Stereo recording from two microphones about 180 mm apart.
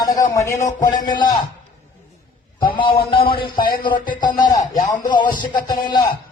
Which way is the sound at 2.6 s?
25° left (ahead or behind).